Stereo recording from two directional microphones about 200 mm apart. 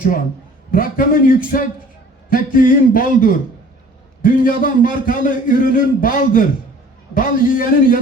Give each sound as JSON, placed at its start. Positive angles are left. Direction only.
{"t": 0.7, "sound": "a man's voice", "side_deg": 45}